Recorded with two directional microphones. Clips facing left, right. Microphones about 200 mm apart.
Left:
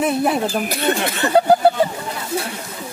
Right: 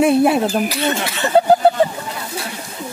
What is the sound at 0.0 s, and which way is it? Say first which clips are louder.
Speech: right 5 dB; 5° right (ahead or behind).